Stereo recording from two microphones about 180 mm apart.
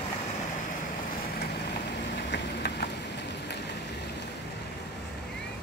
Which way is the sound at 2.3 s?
70° left (ahead or behind).